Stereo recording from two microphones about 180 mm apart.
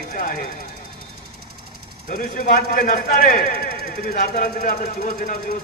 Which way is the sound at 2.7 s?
50° left (ahead or behind).